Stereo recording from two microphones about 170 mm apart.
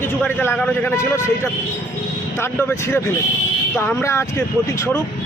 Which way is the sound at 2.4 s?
15° left (ahead or behind).